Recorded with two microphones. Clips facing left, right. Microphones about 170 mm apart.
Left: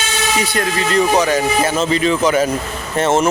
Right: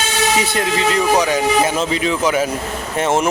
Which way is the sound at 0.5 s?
20° right (ahead or behind).